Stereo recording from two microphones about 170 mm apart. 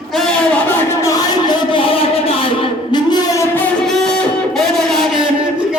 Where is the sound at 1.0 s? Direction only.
20° left (ahead or behind).